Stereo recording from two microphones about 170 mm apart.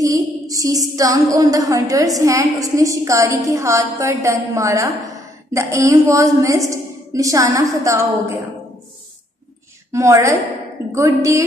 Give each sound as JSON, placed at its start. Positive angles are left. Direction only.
{"t": 0.0, "sound": "a woman's voice", "side_deg": -20}
{"t": 9.9, "sound": "a woman's voice", "side_deg": -15}